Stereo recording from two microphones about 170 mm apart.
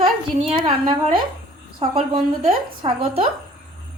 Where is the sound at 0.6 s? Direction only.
30° right (ahead or behind).